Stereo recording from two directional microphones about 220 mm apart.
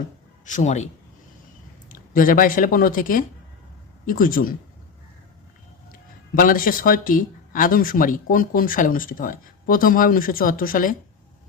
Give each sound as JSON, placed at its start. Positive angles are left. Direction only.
{"t": 0.4, "sound": "speech", "side_deg": 35}
{"t": 2.1, "sound": "speech", "side_deg": 40}
{"t": 6.3, "sound": "speech", "side_deg": 40}